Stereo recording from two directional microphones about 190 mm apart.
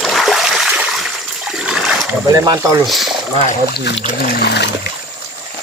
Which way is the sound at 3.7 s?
65° left (ahead or behind).